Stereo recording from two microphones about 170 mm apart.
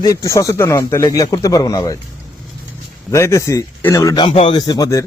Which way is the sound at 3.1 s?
20° left (ahead or behind).